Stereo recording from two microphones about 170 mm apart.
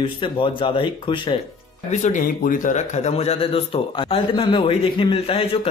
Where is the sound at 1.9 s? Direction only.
45° left (ahead or behind).